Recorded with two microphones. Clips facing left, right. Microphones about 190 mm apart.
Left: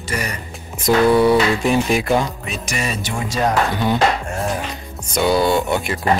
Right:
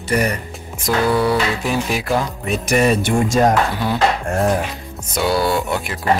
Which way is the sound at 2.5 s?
55° right (ahead or behind).